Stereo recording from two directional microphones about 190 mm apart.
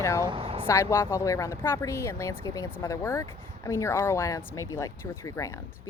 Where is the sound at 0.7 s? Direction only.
15° left (ahead or behind).